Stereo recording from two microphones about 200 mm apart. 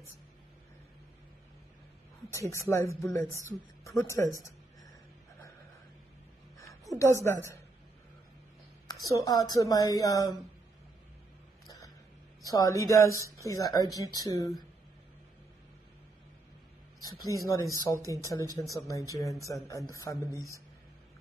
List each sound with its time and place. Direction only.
2.3 s speech: 15° left (ahead or behind)
7.0 s speech: 15° left (ahead or behind)
9.1 s speech: 15° left (ahead or behind)
11.6 s a sound: 15° left (ahead or behind)
12.4 s speech: 15° left (ahead or behind)
17.3 s speech: 15° left (ahead or behind)